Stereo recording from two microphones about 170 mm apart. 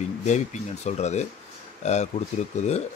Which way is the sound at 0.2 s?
45° left (ahead or behind).